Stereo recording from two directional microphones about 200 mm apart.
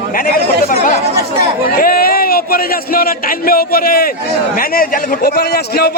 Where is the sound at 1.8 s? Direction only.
50° left (ahead or behind).